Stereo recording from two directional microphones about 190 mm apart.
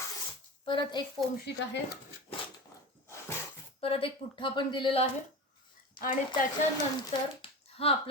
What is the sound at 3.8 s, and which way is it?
Speech, 30° left (ahead or behind).